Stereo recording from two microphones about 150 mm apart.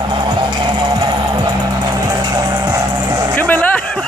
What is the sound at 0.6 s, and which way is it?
Music, 30° right (ahead or behind).